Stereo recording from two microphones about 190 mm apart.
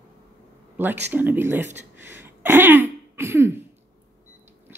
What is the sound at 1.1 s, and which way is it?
Speech, 10° right (ahead or behind).